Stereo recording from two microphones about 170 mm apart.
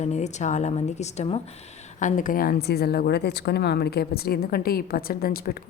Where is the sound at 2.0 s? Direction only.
50° left (ahead or behind).